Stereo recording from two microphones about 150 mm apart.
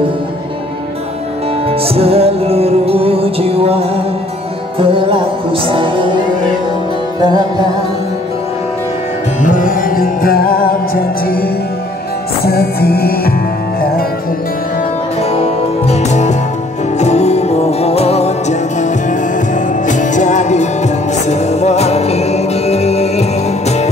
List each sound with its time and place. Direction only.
1.7 s music: 40° right (ahead or behind)
7.2 s music: 25° right (ahead or behind)
9.4 s music: 60° left (ahead or behind); by 10.8 s 80° left
12.4 s music: 90° left
15.3 s music: 45° left (ahead or behind)